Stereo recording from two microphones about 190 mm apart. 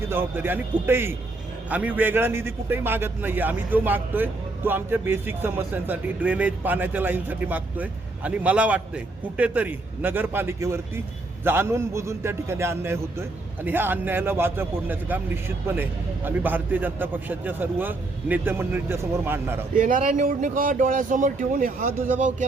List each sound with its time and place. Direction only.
0.1 s a man's voice: 10° right (ahead or behind)
19.7 s speech: 45° right (ahead or behind)